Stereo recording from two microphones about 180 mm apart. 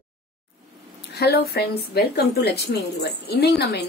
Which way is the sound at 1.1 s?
60° left (ahead or behind).